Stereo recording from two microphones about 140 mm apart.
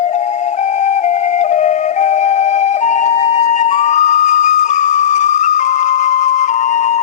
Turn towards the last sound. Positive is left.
turn(degrees=55)  # may be behind; listen again after turning